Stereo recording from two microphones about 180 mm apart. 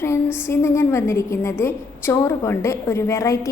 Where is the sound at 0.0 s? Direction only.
15° left (ahead or behind).